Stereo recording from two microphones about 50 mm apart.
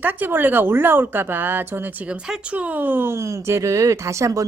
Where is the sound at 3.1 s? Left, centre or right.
Right.